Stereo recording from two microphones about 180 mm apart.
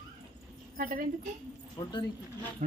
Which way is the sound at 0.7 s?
50° right (ahead or behind).